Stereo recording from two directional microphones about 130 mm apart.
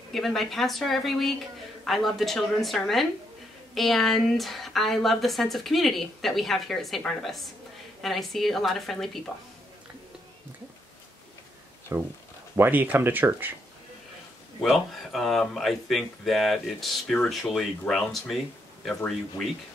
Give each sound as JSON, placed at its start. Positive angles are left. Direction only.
{"t": 0.1, "sound": "speech", "side_deg": 0}
{"t": 11.9, "sound": "speech", "side_deg": -25}
{"t": 12.5, "sound": "speech", "side_deg": -15}
{"t": 14.6, "sound": "speech", "side_deg": 0}